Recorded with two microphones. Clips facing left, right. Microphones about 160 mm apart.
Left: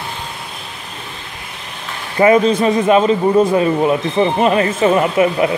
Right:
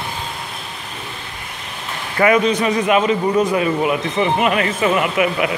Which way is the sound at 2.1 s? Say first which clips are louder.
Left 4 dB; 30° left (ahead or behind).